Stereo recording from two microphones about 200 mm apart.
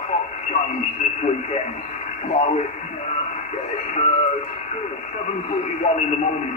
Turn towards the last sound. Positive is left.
turn(degrees=35)  # may be behind; listen again after turning